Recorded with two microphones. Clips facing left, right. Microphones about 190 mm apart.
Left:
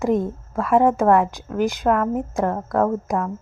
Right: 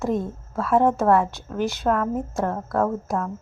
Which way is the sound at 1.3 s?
15° left (ahead or behind).